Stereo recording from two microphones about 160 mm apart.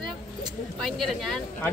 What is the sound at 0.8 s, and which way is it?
Speech, centre (ahead or behind).